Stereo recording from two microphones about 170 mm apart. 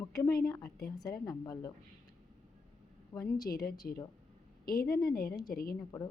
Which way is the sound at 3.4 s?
60° left (ahead or behind).